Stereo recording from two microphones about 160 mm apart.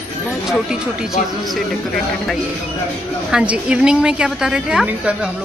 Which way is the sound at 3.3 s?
5° right (ahead or behind).